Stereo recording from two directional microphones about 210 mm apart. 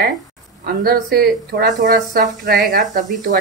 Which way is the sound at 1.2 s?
45° right (ahead or behind).